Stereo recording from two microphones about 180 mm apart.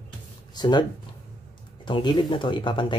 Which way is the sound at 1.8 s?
25° left (ahead or behind).